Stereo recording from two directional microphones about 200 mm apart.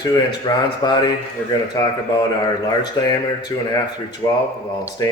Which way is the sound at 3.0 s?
15° left (ahead or behind).